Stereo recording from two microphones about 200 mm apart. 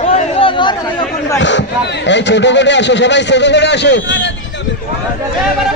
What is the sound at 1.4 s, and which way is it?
A man's voice, 65° left (ahead or behind).